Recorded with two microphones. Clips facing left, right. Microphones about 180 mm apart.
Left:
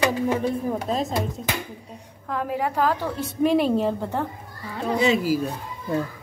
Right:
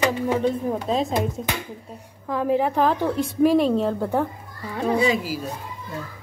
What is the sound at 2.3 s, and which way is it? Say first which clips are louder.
A woman's voice: right 5 dB; 20° right (ahead or behind).